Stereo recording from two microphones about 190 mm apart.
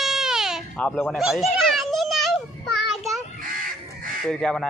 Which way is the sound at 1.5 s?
Centre (ahead or behind).